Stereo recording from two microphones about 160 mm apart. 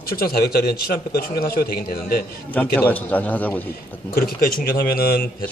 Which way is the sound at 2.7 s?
10° left (ahead or behind).